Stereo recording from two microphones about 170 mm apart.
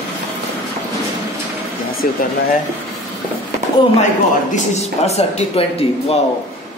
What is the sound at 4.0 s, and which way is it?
Speech, 45° left (ahead or behind).